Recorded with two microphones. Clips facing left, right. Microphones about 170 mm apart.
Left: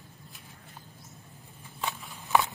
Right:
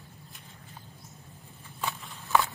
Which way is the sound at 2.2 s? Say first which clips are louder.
Even; 15° left (ahead or behind).